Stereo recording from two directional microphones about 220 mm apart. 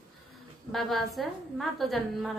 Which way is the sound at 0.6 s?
Centre (ahead or behind).